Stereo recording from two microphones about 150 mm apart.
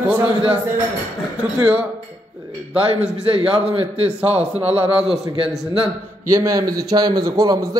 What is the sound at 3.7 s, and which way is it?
A man's voice, 40° right (ahead or behind).